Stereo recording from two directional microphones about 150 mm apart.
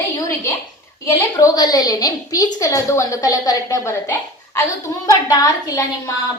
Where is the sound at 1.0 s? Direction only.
25° left (ahead or behind).